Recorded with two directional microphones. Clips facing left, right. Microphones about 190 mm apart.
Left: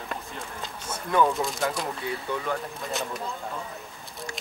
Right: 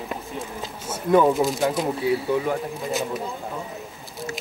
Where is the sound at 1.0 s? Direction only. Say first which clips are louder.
Right 6 dB; 20° right (ahead or behind).